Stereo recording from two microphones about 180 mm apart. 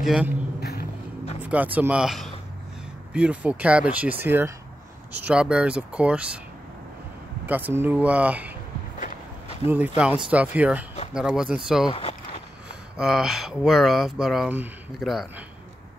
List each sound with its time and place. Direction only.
0.0 s a man's voice: centre (ahead or behind)
0.6 s music: 60° left (ahead or behind)
1.4 s a sound: 10° right (ahead or behind)
1.8 s speech: 5° right (ahead or behind)
7.4 s speech: 10° right (ahead or behind)
9.7 s speech: 10° right (ahead or behind)
11.9 s speech: 30° left (ahead or behind)
12.9 s speech: centre (ahead or behind)